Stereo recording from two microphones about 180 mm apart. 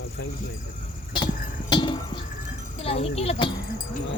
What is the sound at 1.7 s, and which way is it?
Speech, 25° left (ahead or behind).